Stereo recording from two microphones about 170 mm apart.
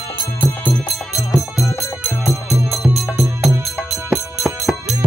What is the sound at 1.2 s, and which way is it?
Music, 20° left (ahead or behind).